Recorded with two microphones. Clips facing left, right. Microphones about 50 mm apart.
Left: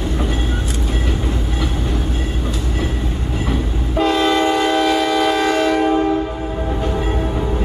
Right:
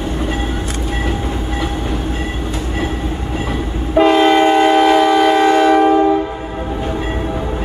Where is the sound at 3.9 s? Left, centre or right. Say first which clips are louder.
Right 6 dB; right.